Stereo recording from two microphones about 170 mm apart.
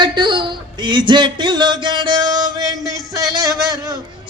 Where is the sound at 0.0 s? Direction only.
25° right (ahead or behind).